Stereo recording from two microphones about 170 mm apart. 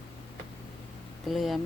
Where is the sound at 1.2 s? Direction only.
Centre (ahead or behind).